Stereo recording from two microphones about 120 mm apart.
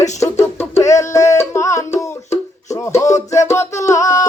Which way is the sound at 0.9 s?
25° left (ahead or behind).